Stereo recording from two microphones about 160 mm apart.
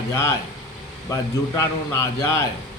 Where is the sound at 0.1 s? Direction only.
20° left (ahead or behind).